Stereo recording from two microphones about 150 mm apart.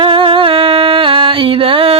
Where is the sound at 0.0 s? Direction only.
35° right (ahead or behind).